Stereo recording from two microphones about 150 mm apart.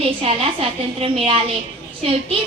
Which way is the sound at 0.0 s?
40° right (ahead or behind).